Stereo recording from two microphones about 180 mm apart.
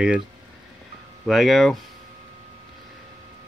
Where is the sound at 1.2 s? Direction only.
Centre (ahead or behind).